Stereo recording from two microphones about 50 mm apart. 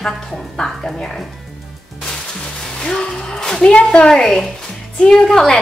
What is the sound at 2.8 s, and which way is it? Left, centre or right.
A woman's voice, centre.